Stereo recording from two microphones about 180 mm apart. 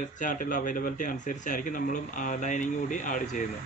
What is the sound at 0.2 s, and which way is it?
A man's voice, 45° left (ahead or behind).